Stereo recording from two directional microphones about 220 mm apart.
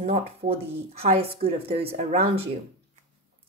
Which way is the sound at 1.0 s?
25° right (ahead or behind).